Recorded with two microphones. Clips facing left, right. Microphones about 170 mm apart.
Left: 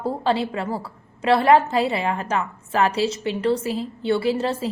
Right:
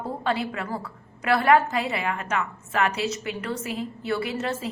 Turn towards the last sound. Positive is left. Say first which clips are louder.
# left 6 dB
turn(degrees=30)  # may be behind; listen again after turning